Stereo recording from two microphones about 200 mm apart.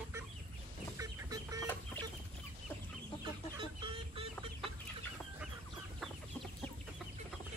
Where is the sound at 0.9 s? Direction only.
15° right (ahead or behind).